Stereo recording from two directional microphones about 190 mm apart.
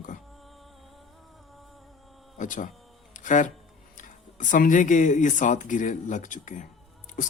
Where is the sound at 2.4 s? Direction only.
40° left (ahead or behind).